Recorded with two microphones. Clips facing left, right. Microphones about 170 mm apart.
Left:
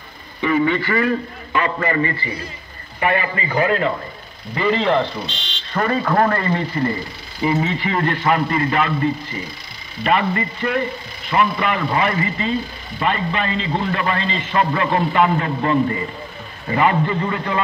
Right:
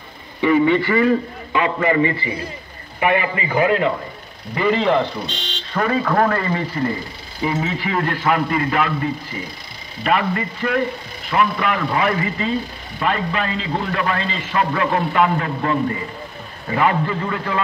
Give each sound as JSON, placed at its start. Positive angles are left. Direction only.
{"t": 0.4, "sound": "a man's voice", "side_deg": -20}